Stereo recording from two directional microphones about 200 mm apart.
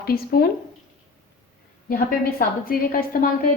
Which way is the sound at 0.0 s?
50° left (ahead or behind).